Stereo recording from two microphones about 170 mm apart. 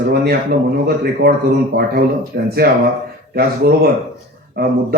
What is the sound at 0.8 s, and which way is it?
Speech, 70° right (ahead or behind).